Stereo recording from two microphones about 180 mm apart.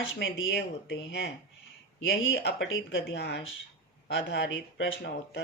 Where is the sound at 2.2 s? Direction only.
75° left (ahead or behind).